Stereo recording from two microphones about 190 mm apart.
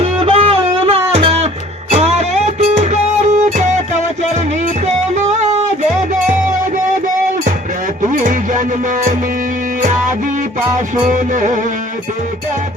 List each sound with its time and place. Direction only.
0.0 s music: 30° right (ahead or behind)
5.2 s music: 40° right (ahead or behind)
8.0 s a sound: 40° right (ahead or behind)
11.1 s music: 40° right (ahead or behind)